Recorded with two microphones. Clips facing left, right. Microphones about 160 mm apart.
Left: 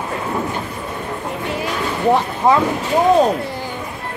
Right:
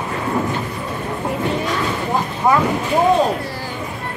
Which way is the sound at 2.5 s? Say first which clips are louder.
Left 2 dB; 25° left (ahead or behind).